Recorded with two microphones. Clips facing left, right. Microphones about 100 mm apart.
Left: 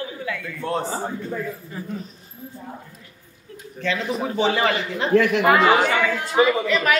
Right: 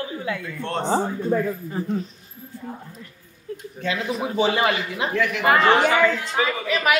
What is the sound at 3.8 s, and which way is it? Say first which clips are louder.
A man's voice: left 1 dB; 5° right (ahead or behind).